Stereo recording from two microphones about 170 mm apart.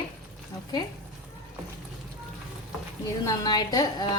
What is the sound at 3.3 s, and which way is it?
Speech, 25° left (ahead or behind).